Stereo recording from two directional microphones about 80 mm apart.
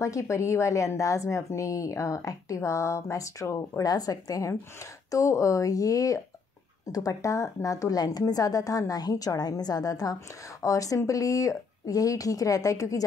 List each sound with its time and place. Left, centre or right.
0.0 s a woman's voice: left